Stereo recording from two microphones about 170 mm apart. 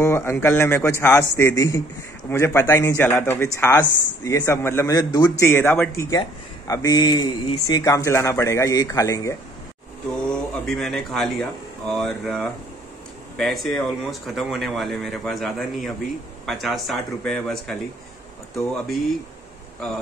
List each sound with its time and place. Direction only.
0.0 s a man's voice: 15° left (ahead or behind)
10.2 s speech: 5° left (ahead or behind)